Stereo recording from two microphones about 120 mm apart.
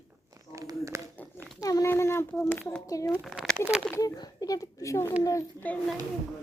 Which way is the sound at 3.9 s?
30° left (ahead or behind).